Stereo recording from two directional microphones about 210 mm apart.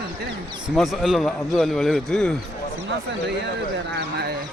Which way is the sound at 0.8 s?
Centre (ahead or behind).